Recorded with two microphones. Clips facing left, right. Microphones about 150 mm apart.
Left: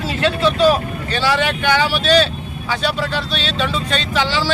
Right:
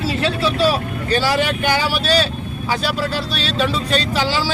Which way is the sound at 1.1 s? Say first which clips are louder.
Right 1 dB; 40° right (ahead or behind).